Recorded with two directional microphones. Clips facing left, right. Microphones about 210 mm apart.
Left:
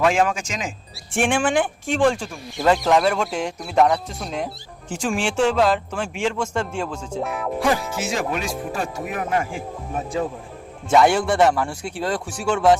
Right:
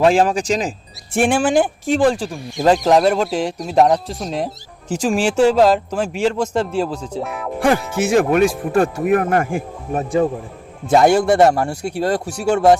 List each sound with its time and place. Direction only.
0.0 s speech: 35° right (ahead or behind)
7.2 s speech: centre (ahead or behind)
8.0 s speech: 55° right (ahead or behind)
10.8 s speech: 40° right (ahead or behind)